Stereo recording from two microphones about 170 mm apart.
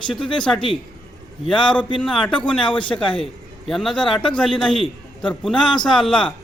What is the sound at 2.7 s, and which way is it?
Speech, 30° left (ahead or behind).